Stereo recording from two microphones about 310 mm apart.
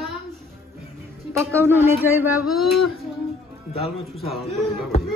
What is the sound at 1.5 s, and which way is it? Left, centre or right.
Speech, centre.